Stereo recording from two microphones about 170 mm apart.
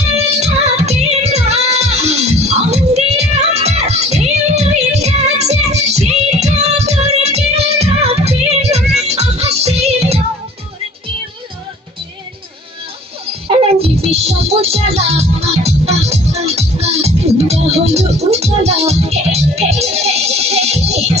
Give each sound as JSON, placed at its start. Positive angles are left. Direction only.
{"t": 0.3, "sound": "music", "side_deg": -40}
{"t": 13.7, "sound": "music", "side_deg": -35}